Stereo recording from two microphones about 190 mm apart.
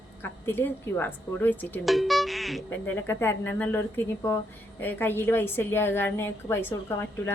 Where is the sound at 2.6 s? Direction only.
10° left (ahead or behind).